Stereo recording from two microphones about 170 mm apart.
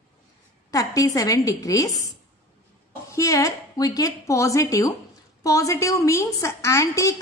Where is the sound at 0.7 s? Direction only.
20° left (ahead or behind).